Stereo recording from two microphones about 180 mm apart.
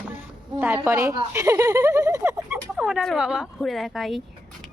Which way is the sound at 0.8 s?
15° right (ahead or behind).